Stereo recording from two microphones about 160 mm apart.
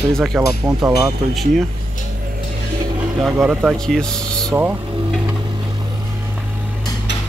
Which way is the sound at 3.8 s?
5° left (ahead or behind).